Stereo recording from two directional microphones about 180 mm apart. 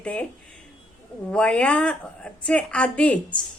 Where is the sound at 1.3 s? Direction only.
5° left (ahead or behind).